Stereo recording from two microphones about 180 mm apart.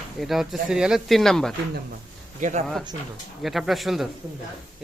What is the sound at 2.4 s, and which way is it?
Speech, 45° right (ahead or behind).